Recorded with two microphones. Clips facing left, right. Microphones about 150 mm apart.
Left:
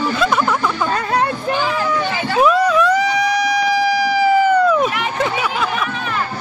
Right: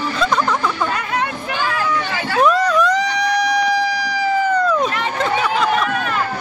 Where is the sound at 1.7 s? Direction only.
15° left (ahead or behind).